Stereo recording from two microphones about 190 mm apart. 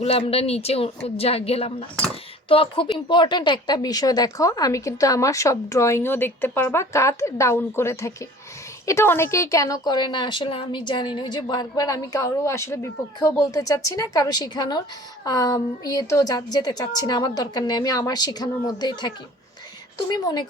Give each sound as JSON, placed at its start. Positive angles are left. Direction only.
{"t": 0.0, "sound": "a woman's voice", "side_deg": 30}